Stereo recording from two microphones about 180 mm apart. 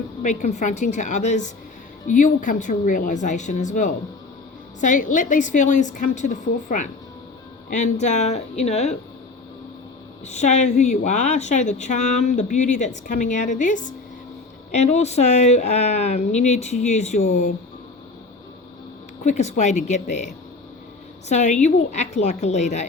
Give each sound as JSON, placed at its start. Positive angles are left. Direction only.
{"t": 0.2, "sound": "a woman's voice", "side_deg": 45}
{"t": 10.2, "sound": "a woman's voice", "side_deg": 40}
{"t": 19.2, "sound": "a woman's voice", "side_deg": 40}